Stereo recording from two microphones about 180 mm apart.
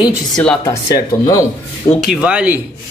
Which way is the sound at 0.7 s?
20° left (ahead or behind).